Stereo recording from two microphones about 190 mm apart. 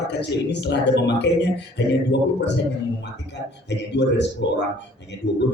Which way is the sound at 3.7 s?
65° left (ahead or behind).